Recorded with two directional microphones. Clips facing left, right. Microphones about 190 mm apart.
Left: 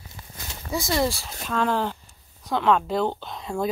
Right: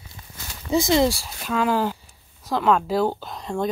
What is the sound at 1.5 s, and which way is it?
Speech, 5° right (ahead or behind).